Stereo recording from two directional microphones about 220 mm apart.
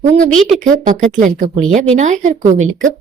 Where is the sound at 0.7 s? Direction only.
35° right (ahead or behind).